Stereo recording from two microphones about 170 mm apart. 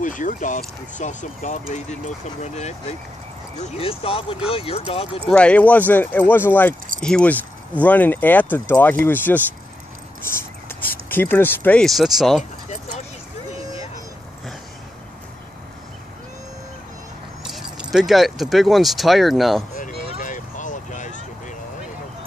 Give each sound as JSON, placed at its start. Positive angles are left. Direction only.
{"t": 0.0, "sound": "speech", "side_deg": 50}
{"t": 5.2, "sound": "speech", "side_deg": 5}
{"t": 10.7, "sound": "speech", "side_deg": 10}
{"t": 17.4, "sound": "keys jangling", "side_deg": 0}
{"t": 17.9, "sound": "speech", "side_deg": 0}
{"t": 19.8, "sound": "vehicle", "side_deg": 50}